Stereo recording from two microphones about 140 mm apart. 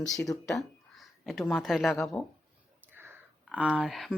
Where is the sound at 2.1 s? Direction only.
20° left (ahead or behind).